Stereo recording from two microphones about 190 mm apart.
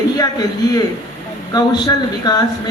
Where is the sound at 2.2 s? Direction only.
20° left (ahead or behind).